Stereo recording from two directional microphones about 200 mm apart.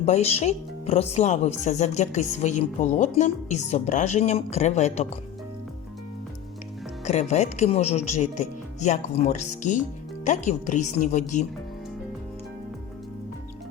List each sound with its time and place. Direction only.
0.0 s speech: 35° left (ahead or behind)
7.0 s speech: 35° left (ahead or behind)